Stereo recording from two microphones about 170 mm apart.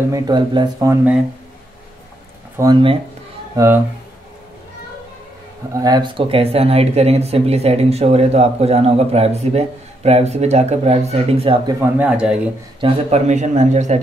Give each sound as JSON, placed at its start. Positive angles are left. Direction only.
{"t": 0.1, "sound": "speech", "side_deg": -25}
{"t": 2.5, "sound": "speech", "side_deg": -20}
{"t": 5.8, "sound": "speech", "side_deg": -25}
{"t": 11.8, "sound": "speech", "side_deg": -5}
{"t": 12.8, "sound": "speech", "side_deg": -40}